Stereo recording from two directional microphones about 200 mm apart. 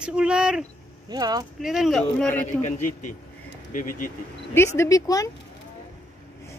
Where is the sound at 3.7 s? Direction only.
40° left (ahead or behind).